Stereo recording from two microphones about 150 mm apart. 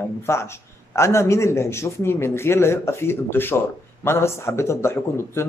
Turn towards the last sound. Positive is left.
turn(degrees=15)  # may be behind; listen again after turning